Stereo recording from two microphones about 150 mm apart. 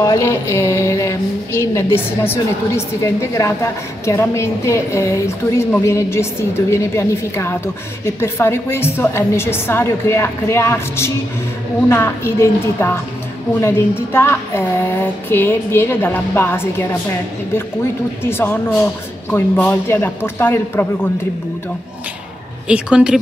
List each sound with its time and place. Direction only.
0.0 s a woman's voice: 20° left (ahead or behind)
18.2 s speech: 15° left (ahead or behind)
22.7 s speech: 5° right (ahead or behind)